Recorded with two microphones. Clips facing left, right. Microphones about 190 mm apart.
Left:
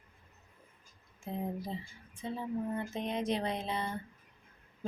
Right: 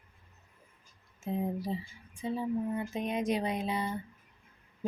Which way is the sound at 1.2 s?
10° right (ahead or behind).